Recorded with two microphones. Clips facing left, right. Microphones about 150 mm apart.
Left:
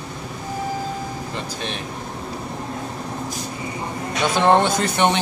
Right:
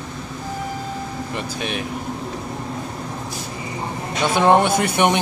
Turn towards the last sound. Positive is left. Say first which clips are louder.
# right 1 dB
turn(degrees=-15)  # may be behind; listen again after turning